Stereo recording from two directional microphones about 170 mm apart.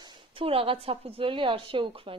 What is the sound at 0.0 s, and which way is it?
Speech, 30° right (ahead or behind).